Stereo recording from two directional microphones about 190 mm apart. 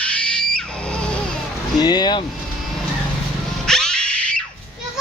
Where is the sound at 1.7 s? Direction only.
20° left (ahead or behind).